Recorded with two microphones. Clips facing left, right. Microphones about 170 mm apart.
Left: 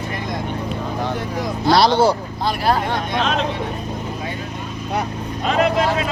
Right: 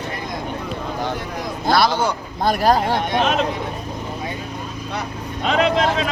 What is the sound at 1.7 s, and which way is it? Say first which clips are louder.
Speech: left 4 dB; 50° right (ahead or behind).